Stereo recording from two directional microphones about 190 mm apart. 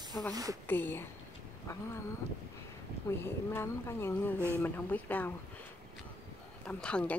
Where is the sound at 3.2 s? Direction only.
15° left (ahead or behind).